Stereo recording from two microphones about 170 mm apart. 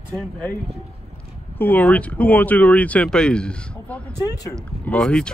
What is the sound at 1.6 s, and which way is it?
Speech, 10° left (ahead or behind).